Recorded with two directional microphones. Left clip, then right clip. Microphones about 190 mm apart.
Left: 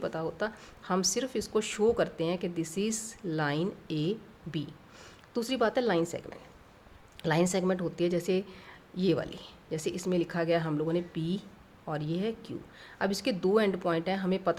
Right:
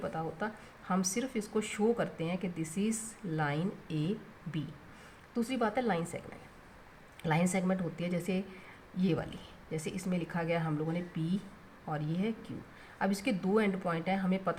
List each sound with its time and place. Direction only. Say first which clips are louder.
0.0 s speech: left 4 dB; 50° left (ahead or behind)
5.3 s speech: left 4 dB; 45° left (ahead or behind)